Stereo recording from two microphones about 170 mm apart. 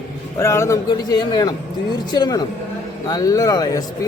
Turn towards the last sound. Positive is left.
turn(degrees=20)  # may be behind; listen again after turning